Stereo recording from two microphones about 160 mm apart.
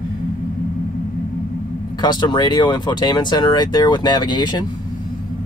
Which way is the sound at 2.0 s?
25° left (ahead or behind).